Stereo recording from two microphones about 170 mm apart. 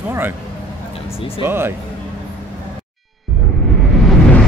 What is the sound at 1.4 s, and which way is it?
Speech, 15° right (ahead or behind).